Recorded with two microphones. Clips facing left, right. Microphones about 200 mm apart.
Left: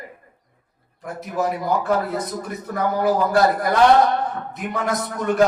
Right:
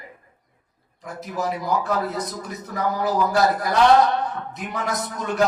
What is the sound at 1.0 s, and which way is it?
A man's voice, 55° left (ahead or behind).